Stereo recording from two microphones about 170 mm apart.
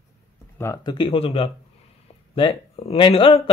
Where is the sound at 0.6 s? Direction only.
20° left (ahead or behind).